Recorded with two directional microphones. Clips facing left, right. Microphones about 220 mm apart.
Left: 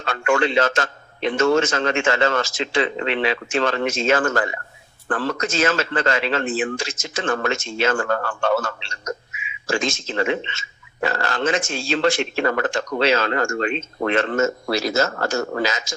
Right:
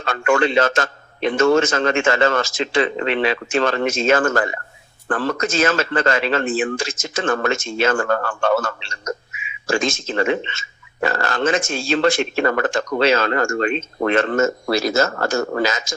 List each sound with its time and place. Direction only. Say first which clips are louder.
0.0 s speech: right 2 dB; 45° right (ahead or behind)